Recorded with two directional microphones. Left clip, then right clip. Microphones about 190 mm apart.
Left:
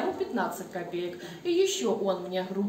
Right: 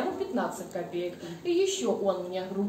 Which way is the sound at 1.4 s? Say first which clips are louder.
Left 1 dB; 60° left (ahead or behind).